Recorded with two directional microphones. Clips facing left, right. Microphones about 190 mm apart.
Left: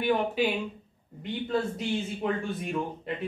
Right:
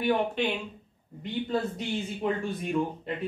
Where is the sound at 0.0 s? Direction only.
5° left (ahead or behind).